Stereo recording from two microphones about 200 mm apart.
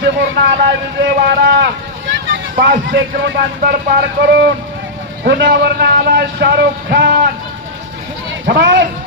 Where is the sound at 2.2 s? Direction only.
70° right (ahead or behind); by 7.3 s 50° right (ahead or behind).